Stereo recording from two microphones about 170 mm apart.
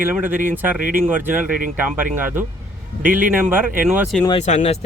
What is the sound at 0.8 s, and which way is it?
Speech, 55° right (ahead or behind).